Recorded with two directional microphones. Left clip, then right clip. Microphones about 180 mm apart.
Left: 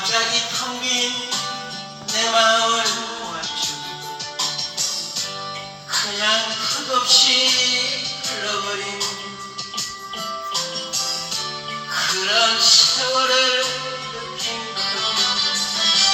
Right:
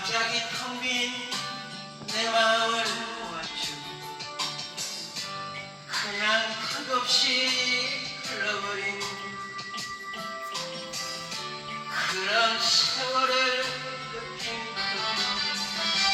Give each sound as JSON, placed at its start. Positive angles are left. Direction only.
{"t": 0.0, "sound": "a sound", "side_deg": 15}
{"t": 2.1, "sound": "music", "side_deg": 10}
{"t": 5.9, "sound": "music", "side_deg": 20}
{"t": 10.5, "sound": "music", "side_deg": 20}
{"t": 11.9, "sound": "a sound", "side_deg": 20}
{"t": 15.0, "sound": "music", "side_deg": 15}